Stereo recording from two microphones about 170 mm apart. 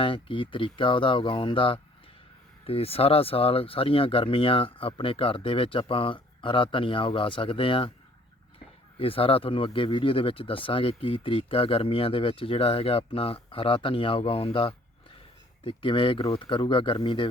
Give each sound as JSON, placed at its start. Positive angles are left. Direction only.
{"t": 0.0, "sound": "speech", "side_deg": 30}